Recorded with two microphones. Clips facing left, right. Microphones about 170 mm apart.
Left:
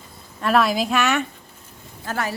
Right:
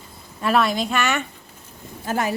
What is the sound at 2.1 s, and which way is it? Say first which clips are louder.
Speech: right 3 dB; 15° right (ahead or behind).